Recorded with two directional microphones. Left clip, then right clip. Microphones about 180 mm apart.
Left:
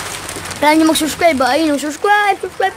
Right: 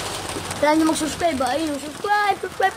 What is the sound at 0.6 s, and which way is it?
Speech, 30° left (ahead or behind).